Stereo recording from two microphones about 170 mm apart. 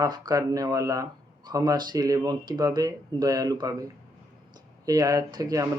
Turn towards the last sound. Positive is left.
turn(degrees=-20)  # may be behind; listen again after turning